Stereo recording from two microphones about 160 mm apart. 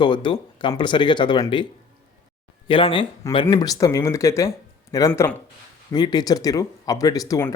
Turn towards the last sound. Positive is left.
turn(degrees=20)  # may be behind; listen again after turning